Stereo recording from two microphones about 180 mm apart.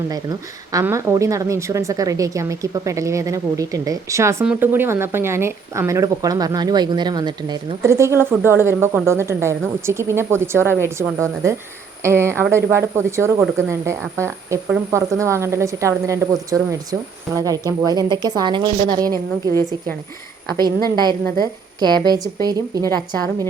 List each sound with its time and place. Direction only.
0.1 s a woman's voice: 20° right (ahead or behind)
19.1 s a woman's voice: 15° left (ahead or behind)
20.6 s a woman's voice: 25° right (ahead or behind)